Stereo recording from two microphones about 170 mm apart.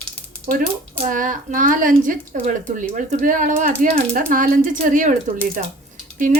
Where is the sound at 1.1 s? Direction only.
50° right (ahead or behind).